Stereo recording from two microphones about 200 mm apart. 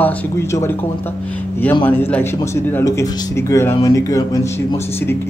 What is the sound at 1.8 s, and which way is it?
Speech, 10° left (ahead or behind).